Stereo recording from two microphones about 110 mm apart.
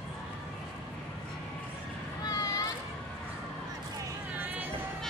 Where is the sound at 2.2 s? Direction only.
35° left (ahead or behind).